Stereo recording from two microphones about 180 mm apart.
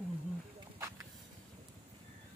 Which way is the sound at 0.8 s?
15° right (ahead or behind).